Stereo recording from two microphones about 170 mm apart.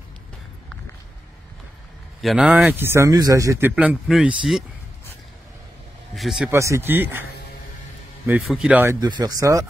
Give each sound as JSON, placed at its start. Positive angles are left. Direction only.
{"t": 2.2, "sound": "speech", "side_deg": -5}
{"t": 6.1, "sound": "speech", "side_deg": 0}
{"t": 6.5, "sound": "speech", "side_deg": -15}
{"t": 8.4, "sound": "speech", "side_deg": 0}
{"t": 9.0, "sound": "speech", "side_deg": -25}